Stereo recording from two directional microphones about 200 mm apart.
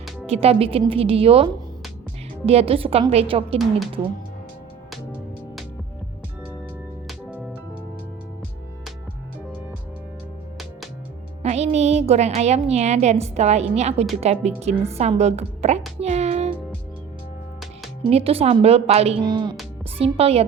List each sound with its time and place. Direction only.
0.3 s a woman's voice: 30° right (ahead or behind)
2.5 s a woman's voice: 30° right (ahead or behind)
7.1 s music: 5° right (ahead or behind)
11.4 s a woman's voice: 35° right (ahead or behind)
16.0 s music: 35° right (ahead or behind)
18.0 s a woman's voice: 30° right (ahead or behind)